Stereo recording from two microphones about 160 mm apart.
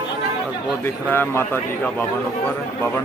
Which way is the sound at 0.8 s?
15° left (ahead or behind).